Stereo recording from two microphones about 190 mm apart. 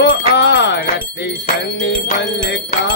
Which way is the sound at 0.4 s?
65° left (ahead or behind).